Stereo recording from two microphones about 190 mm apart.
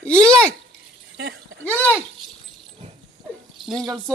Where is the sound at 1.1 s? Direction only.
60° right (ahead or behind).